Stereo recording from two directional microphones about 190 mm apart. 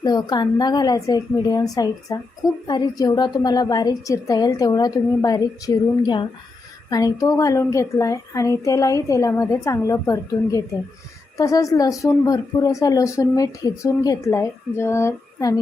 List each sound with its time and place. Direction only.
0.0 s a woman's voice: 20° left (ahead or behind)